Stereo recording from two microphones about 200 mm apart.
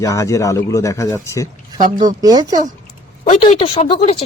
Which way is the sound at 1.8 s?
20° right (ahead or behind).